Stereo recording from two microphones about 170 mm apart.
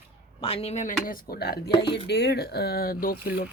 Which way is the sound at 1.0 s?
60° left (ahead or behind).